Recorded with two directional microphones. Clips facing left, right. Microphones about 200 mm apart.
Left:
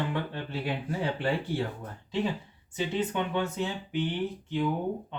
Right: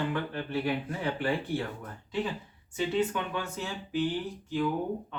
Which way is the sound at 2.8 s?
20° left (ahead or behind).